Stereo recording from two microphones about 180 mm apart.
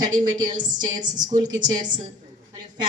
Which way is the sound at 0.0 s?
25° right (ahead or behind).